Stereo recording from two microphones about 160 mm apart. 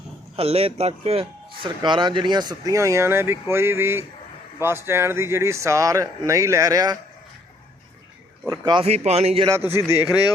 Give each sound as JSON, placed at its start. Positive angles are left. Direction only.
{"t": 0.3, "sound": "speech", "side_deg": -40}
{"t": 1.6, "sound": "a man's voice", "side_deg": -30}
{"t": 8.4, "sound": "speech", "side_deg": -25}
{"t": 8.8, "sound": "speech", "side_deg": -40}
{"t": 9.5, "sound": "a man's voice", "side_deg": -15}